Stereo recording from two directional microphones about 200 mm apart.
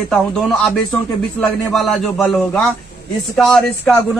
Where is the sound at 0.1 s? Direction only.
Centre (ahead or behind).